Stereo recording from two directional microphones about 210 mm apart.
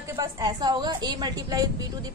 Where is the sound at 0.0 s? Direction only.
15° right (ahead or behind).